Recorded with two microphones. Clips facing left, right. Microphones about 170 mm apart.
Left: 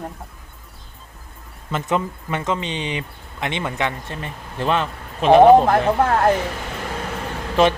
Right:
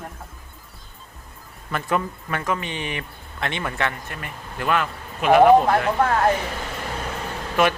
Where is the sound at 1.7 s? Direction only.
20° left (ahead or behind).